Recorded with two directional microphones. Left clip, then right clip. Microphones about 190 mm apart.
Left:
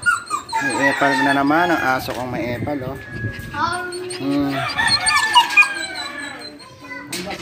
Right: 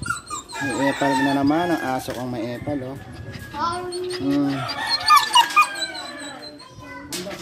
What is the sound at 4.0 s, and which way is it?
Speech, 15° right (ahead or behind).